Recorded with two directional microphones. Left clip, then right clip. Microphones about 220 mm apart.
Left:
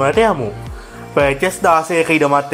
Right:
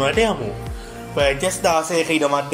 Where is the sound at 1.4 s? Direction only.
45° left (ahead or behind).